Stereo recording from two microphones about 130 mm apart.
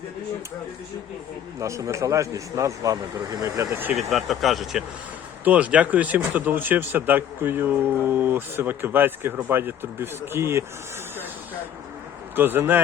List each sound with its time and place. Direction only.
1.5 s speech: 25° right (ahead or behind)
3.9 s speech: centre (ahead or behind); by 10.6 s 20° right (ahead or behind)
12.4 s speech: 15° right (ahead or behind)